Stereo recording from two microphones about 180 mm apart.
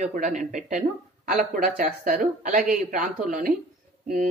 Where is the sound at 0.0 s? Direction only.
45° right (ahead or behind).